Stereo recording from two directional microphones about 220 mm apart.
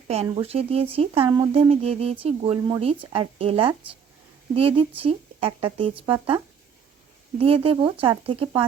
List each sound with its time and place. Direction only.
0.1 s speech: 30° right (ahead or behind)
7.3 s speech: 25° right (ahead or behind)